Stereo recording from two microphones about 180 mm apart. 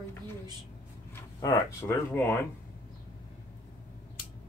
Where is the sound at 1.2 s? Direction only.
15° left (ahead or behind).